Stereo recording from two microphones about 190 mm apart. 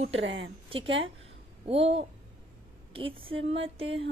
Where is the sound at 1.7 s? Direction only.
30° right (ahead or behind).